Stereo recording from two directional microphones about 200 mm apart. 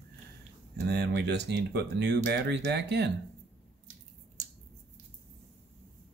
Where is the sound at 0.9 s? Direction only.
55° right (ahead or behind).